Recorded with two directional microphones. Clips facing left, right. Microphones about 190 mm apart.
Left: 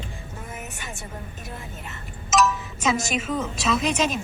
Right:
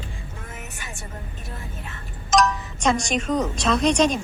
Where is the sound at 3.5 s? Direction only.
5° left (ahead or behind).